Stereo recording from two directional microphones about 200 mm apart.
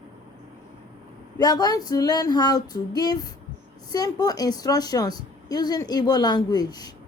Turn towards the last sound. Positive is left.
turn(degrees=20)  # may be behind; listen again after turning